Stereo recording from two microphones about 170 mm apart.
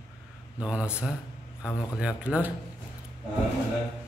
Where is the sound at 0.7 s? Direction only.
5° right (ahead or behind).